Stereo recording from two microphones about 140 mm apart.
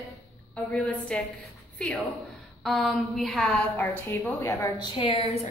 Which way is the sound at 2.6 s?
Centre (ahead or behind).